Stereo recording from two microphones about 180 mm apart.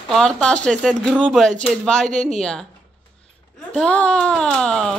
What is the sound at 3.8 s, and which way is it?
Speech, 5° left (ahead or behind).